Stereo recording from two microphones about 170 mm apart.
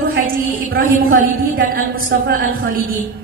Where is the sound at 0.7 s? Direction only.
55° right (ahead or behind).